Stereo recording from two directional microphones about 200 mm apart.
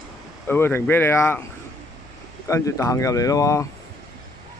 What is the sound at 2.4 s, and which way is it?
Speech, 15° left (ahead or behind).